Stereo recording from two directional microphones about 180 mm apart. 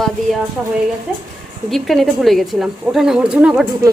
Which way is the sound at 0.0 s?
Centre (ahead or behind).